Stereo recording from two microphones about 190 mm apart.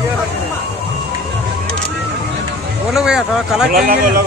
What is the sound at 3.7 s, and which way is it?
Speech, 50° right (ahead or behind).